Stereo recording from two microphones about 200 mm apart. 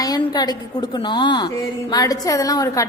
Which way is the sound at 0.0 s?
20° left (ahead or behind).